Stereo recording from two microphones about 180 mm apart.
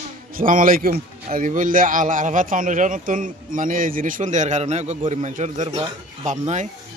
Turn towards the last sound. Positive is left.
turn(degrees=-40)  # may be behind; listen again after turning